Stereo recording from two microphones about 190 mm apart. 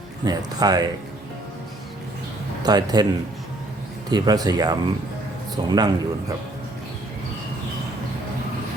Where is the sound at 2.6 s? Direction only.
20° right (ahead or behind).